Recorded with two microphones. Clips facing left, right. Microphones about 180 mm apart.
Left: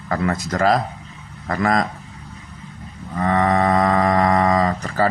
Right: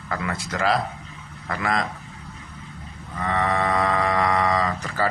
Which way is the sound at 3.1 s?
45° left (ahead or behind).